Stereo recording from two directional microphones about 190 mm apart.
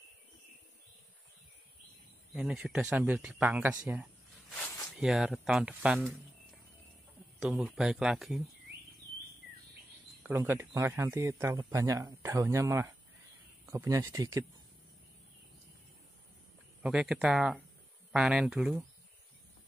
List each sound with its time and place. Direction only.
2.3 s speech: 5° right (ahead or behind)
4.6 s a sound: 10° left (ahead or behind)
5.0 s speech: 5° right (ahead or behind)
7.3 s speech: centre (ahead or behind)
10.2 s speech: 10° right (ahead or behind)
16.8 s speech: 5° right (ahead or behind)